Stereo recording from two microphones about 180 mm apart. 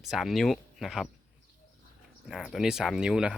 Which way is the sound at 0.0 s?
Centre (ahead or behind).